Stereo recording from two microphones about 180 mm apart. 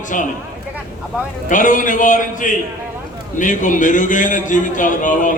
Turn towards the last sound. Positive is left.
turn(degrees=45)  # may be behind; listen again after turning